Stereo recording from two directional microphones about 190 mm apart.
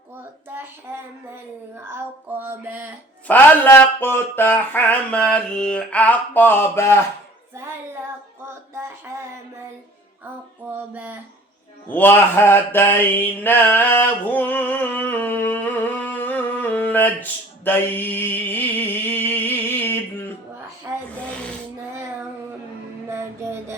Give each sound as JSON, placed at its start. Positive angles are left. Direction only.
{"t": 2.4, "sound": "music", "side_deg": -10}
{"t": 3.2, "sound": "a sound", "side_deg": 10}
{"t": 8.4, "sound": "a sound", "side_deg": -15}
{"t": 10.9, "sound": "music", "side_deg": -10}
{"t": 11.9, "sound": "mantra", "side_deg": 10}
{"t": 21.1, "sound": "snoring", "side_deg": 5}